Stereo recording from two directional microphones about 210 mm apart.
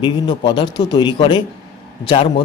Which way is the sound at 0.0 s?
20° left (ahead or behind).